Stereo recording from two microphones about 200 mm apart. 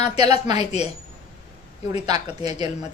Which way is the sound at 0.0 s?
30° left (ahead or behind).